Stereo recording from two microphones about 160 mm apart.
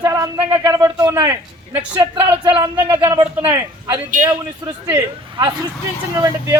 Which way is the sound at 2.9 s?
30° right (ahead or behind).